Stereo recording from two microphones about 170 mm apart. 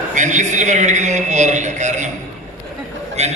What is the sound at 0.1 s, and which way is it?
A man's voice, 45° right (ahead or behind).